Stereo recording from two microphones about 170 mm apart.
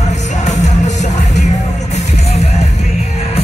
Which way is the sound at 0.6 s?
45° left (ahead or behind).